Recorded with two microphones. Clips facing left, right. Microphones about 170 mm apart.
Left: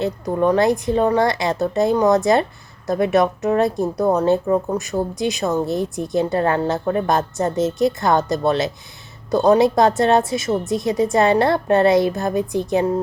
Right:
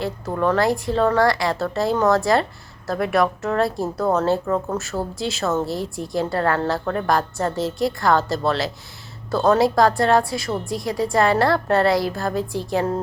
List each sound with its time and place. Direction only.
0.0 s a woman's voice: 20° left (ahead or behind)